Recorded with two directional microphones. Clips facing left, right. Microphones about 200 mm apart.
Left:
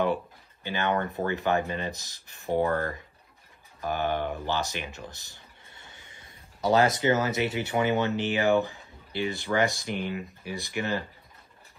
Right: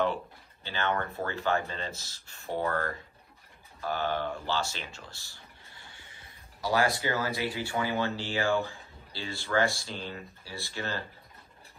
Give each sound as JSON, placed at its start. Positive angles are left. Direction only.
{"t": 0.7, "sound": "speech", "side_deg": 15}